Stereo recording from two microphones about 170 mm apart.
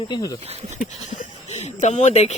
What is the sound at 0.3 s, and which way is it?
Speech, 35° right (ahead or behind).